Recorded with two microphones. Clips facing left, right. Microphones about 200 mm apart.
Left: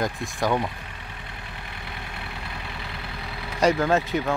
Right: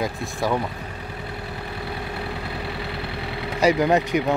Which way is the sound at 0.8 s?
40° right (ahead or behind).